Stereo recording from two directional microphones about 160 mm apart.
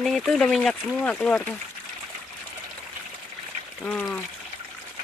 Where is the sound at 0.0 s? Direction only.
Centre (ahead or behind).